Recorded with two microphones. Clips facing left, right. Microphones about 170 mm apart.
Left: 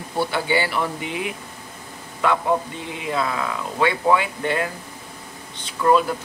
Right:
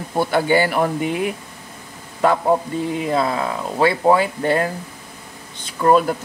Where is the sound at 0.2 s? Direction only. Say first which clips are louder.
Right 5 dB; 45° right (ahead or behind).